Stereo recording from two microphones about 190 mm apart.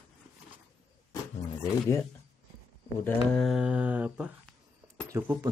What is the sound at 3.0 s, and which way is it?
Speech, 5° left (ahead or behind).